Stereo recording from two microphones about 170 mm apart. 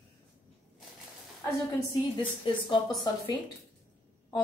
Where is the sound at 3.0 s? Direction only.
25° left (ahead or behind).